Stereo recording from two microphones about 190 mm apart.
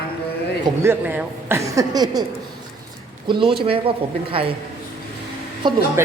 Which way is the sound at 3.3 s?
25° right (ahead or behind).